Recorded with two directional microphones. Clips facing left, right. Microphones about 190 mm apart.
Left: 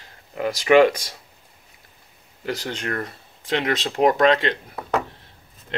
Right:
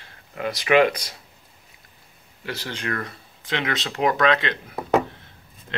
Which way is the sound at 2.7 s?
35° left (ahead or behind).